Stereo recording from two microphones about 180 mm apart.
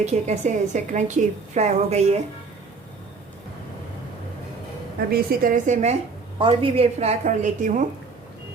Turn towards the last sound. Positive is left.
turn(degrees=-45)  # may be behind; listen again after turning